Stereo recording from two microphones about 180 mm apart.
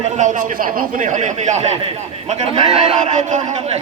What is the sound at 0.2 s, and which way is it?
A man's voice, 45° right (ahead or behind).